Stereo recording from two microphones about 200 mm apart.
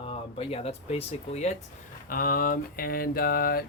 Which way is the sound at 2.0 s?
45° left (ahead or behind).